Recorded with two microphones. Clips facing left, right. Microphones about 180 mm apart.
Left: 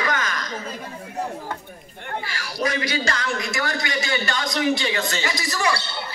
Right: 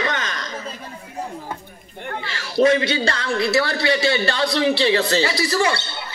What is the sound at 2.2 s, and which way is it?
A man's voice, 25° right (ahead or behind).